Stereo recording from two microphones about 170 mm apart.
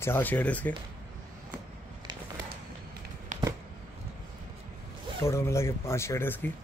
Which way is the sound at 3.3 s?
45° right (ahead or behind).